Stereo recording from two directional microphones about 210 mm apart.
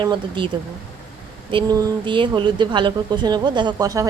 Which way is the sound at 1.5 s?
20° right (ahead or behind).